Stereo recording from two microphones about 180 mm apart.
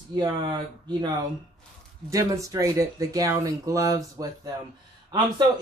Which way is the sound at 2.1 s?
20° right (ahead or behind).